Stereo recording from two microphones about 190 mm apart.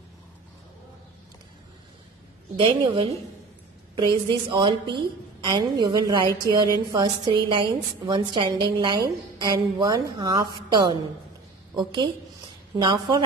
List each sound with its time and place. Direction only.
2.5 s a woman's voice: 25° right (ahead or behind)
4.3 s a woman's voice: 25° right (ahead or behind)